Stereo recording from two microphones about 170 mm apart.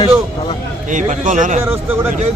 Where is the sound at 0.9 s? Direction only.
50° right (ahead or behind).